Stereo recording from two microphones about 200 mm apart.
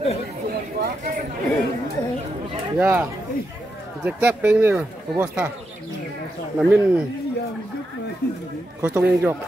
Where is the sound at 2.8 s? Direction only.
10° right (ahead or behind).